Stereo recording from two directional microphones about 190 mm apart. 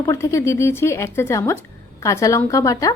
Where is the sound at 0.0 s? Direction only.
15° left (ahead or behind).